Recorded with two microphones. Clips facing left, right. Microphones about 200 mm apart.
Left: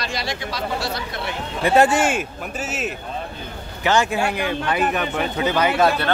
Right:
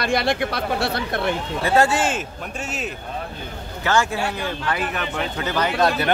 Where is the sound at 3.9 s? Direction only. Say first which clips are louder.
Left 2 dB; 15° left (ahead or behind).